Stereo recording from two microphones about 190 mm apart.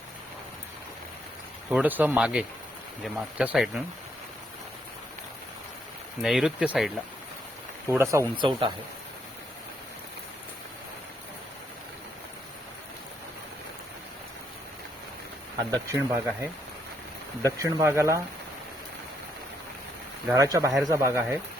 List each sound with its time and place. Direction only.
1.7 s speech: 10° right (ahead or behind)
6.2 s speech: centre (ahead or behind)
7.9 s speech: 15° right (ahead or behind)
8.4 s speech: 25° right (ahead or behind)
15.7 s speech: 15° right (ahead or behind)
17.6 s speech: 15° right (ahead or behind)
20.3 s speech: 15° right (ahead or behind)